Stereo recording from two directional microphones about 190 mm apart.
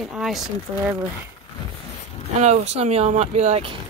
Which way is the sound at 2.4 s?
35° right (ahead or behind).